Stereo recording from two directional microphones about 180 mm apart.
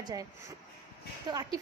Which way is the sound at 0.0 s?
20° right (ahead or behind).